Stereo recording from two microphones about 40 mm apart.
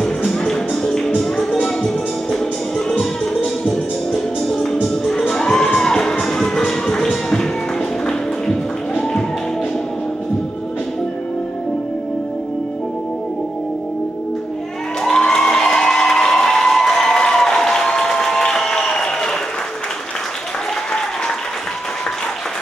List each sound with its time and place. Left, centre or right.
0.3 s music: centre
3.6 s music: centre
15.0 s a sound: centre
18.1 s applause: centre